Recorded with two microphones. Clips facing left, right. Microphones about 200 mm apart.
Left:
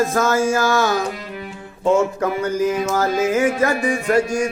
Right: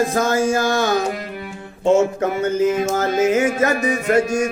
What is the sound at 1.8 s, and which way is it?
Music, 25° right (ahead or behind).